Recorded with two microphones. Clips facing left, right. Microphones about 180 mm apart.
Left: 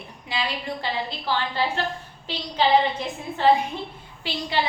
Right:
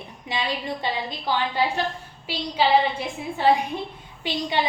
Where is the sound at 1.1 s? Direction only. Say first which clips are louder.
Right 1 dB; 15° right (ahead or behind).